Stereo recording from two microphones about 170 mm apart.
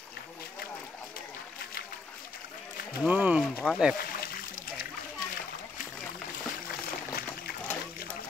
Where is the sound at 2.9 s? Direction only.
10° right (ahead or behind).